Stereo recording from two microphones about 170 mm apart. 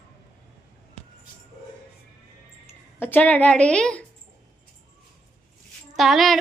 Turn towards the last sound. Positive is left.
turn(degrees=0)  # may be behind; listen again after turning